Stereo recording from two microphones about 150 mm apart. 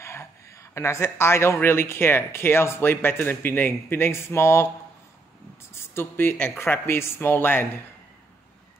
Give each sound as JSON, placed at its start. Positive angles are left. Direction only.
{"t": 0.0, "sound": "a woman's voice", "side_deg": 20}
{"t": 5.9, "sound": "a woman's voice", "side_deg": 15}